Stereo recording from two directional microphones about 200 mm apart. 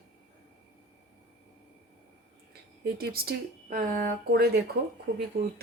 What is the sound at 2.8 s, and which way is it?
A woman's voice, 50° right (ahead or behind).